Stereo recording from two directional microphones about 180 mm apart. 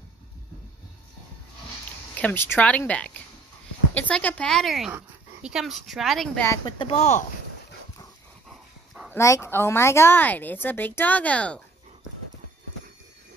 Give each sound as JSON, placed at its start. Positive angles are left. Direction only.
{"t": 2.1, "sound": "a woman's voice", "side_deg": 10}
{"t": 6.4, "sound": "a woman's voice", "side_deg": 15}
{"t": 6.8, "sound": "speech", "side_deg": 35}
{"t": 8.5, "sound": "dog", "side_deg": -5}
{"t": 9.1, "sound": "a woman's voice", "side_deg": 15}